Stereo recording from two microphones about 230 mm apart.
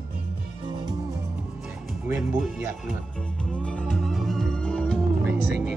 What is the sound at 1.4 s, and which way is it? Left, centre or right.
Music, centre.